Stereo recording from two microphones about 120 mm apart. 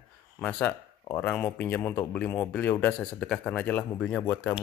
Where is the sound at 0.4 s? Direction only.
10° left (ahead or behind).